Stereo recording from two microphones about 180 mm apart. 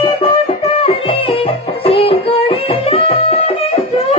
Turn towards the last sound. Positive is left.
turn(degrees=30)  # may be behind; listen again after turning